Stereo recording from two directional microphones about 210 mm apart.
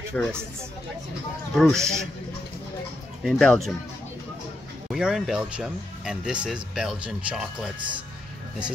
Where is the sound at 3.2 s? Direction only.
Centre (ahead or behind).